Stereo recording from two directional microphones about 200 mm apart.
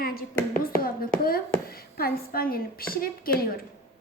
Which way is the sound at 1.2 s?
50° left (ahead or behind).